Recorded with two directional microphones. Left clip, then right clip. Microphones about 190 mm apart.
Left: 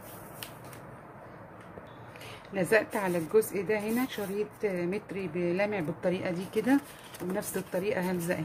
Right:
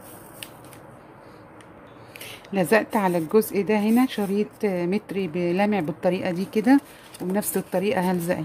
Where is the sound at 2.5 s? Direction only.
40° right (ahead or behind).